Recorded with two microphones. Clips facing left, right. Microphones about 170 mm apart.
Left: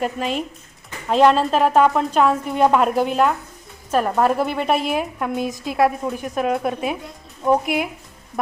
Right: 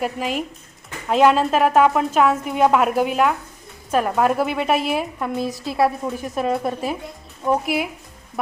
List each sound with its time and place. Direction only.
0.0 s a woman's voice: 5° right (ahead or behind)
5.5 s a woman's voice: 20° left (ahead or behind)
5.7 s a woman's voice: centre (ahead or behind)